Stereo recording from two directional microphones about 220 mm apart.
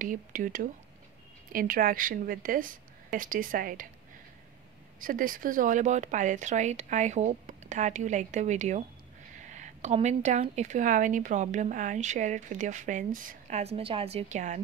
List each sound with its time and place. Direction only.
0.0 s speech: 35° right (ahead or behind)
5.0 s speech: 40° right (ahead or behind)